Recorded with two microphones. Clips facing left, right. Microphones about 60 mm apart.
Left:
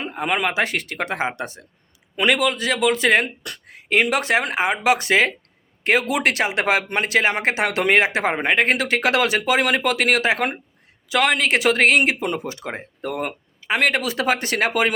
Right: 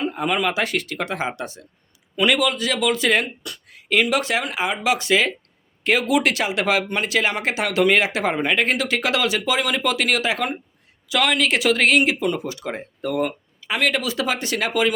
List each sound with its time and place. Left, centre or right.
0.1 s a man's voice: left
3.4 s a sound: left
4.1 s speech: left